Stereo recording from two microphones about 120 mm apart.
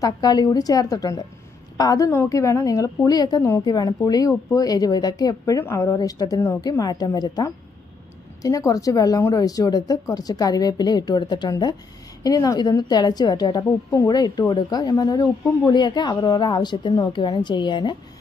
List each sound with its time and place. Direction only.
0.0 s a woman's voice: 35° left (ahead or behind)